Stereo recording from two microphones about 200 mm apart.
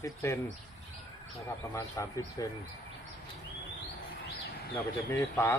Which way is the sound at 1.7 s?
15° left (ahead or behind).